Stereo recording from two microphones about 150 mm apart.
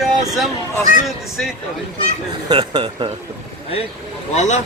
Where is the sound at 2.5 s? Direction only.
30° right (ahead or behind).